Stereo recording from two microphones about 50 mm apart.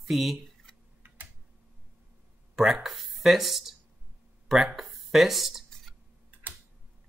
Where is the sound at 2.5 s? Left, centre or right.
Centre.